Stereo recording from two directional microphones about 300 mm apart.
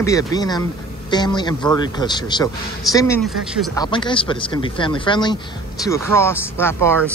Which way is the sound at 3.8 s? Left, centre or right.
Centre.